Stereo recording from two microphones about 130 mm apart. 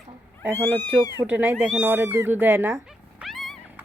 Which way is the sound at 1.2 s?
10° right (ahead or behind).